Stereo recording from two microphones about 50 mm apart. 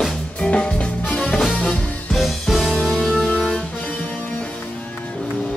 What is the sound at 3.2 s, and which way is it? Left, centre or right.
Music, centre.